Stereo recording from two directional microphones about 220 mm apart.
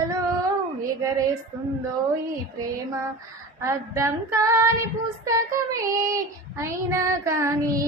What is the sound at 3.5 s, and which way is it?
Child singing, 15° right (ahead or behind).